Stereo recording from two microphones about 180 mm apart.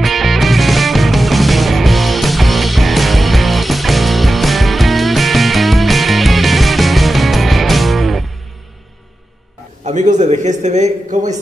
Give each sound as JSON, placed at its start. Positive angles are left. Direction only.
{"t": 0.0, "sound": "music", "side_deg": 0}
{"t": 9.8, "sound": "a man's voice", "side_deg": -40}